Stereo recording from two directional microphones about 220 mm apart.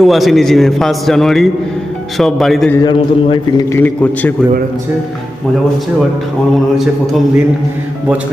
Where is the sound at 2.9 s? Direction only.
20° left (ahead or behind).